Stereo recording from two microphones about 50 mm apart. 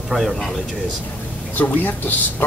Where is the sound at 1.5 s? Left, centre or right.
Left.